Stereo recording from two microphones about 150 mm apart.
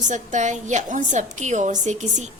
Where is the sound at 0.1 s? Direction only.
55° right (ahead or behind).